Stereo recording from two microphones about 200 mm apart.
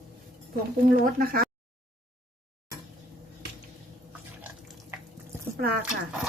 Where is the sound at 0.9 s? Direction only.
45° right (ahead or behind).